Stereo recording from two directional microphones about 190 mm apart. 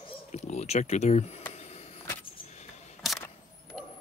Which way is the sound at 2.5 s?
35° left (ahead or behind).